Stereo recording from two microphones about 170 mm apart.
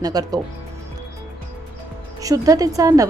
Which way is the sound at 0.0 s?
20° right (ahead or behind).